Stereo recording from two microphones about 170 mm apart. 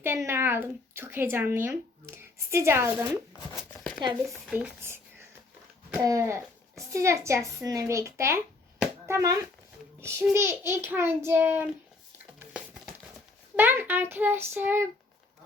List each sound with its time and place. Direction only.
0.0 s speech: 15° right (ahead or behind)
4.3 s speech: 5° right (ahead or behind)
6.0 s a child's voice: 20° right (ahead or behind)
13.6 s speech: 10° right (ahead or behind)